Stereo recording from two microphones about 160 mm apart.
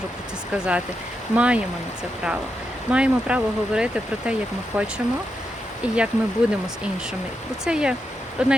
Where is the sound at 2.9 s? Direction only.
5° right (ahead or behind).